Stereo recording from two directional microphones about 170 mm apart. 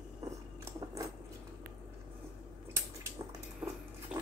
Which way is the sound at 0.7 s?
20° right (ahead or behind).